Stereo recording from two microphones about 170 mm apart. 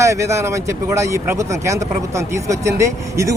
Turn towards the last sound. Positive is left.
turn(degrees=-15)  # may be behind; listen again after turning